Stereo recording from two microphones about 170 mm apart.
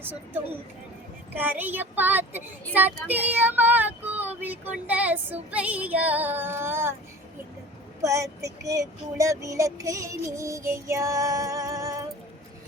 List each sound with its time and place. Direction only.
0.0 s child singing: 10° right (ahead or behind)
8.0 s child singing: 15° right (ahead or behind)